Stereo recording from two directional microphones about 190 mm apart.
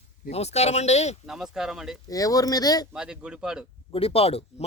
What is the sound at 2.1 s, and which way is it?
Speech, 20° left (ahead or behind).